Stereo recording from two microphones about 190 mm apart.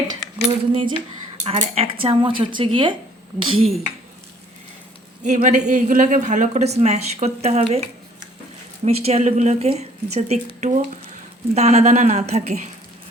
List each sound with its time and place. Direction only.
0.6 s speech: 30° right (ahead or behind)
5.2 s speech: 40° right (ahead or behind)